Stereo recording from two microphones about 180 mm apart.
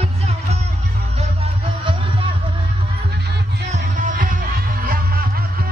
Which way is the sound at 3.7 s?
45° right (ahead or behind).